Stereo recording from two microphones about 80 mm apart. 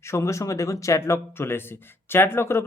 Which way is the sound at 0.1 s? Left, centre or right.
Left.